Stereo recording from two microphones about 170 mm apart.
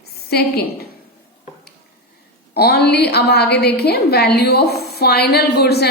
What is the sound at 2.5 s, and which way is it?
A woman's voice, 70° left (ahead or behind).